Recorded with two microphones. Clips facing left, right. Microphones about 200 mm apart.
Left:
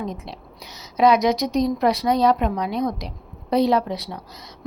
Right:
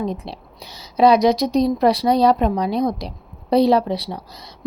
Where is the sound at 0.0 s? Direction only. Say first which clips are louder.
Right 5 dB; 30° right (ahead or behind).